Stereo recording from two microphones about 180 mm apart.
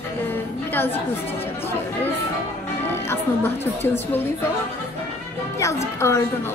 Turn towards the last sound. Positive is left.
turn(degrees=15)  # may be behind; listen again after turning